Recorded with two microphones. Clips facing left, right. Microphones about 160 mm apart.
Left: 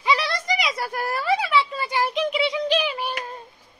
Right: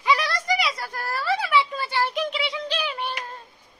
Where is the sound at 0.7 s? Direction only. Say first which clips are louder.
Left 4 dB; 20° left (ahead or behind).